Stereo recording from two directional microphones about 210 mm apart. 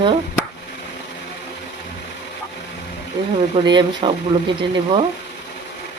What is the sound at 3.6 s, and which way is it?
Speech, 20° right (ahead or behind).